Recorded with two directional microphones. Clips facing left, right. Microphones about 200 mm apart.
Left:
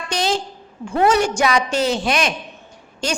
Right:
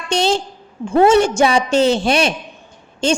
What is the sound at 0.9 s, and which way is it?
A woman's voice, 25° right (ahead or behind).